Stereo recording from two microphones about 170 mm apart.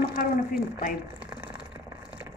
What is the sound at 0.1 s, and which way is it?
Speech, 55° left (ahead or behind).